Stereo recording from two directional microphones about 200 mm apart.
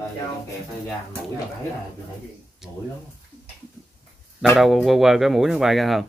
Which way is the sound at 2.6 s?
Centre (ahead or behind).